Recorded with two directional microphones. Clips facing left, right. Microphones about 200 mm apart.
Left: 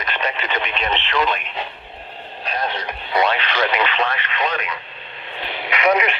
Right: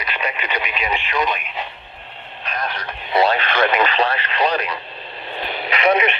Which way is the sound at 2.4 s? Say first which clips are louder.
Left 2 dB; 30° left (ahead or behind).